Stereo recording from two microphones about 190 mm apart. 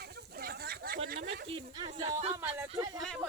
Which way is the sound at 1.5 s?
25° right (ahead or behind).